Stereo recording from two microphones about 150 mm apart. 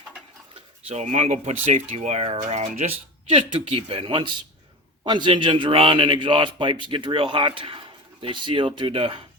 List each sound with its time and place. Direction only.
0.9 s a man's voice: 50° right (ahead or behind)